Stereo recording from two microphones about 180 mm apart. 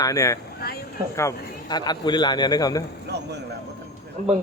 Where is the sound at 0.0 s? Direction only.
20° left (ahead or behind).